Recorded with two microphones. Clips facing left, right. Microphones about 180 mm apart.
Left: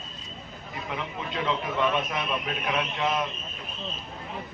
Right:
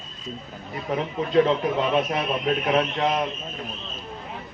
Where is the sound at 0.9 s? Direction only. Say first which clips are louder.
Right 12 dB; 40° right (ahead or behind).